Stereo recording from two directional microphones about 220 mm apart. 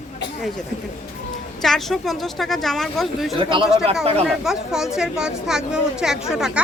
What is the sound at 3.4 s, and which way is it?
Speech, 25° right (ahead or behind).